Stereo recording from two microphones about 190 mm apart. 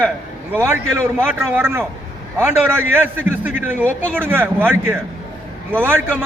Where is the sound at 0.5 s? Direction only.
15° right (ahead or behind).